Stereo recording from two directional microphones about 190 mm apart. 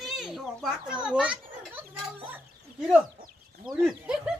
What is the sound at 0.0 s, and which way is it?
Children playing, centre (ahead or behind).